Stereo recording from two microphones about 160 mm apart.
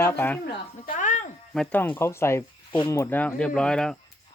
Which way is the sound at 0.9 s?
50° left (ahead or behind).